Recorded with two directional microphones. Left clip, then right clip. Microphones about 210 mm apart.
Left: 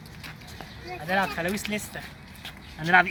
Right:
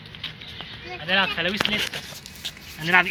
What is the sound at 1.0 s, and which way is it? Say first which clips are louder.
Speech: right 4 dB; 5° left (ahead or behind).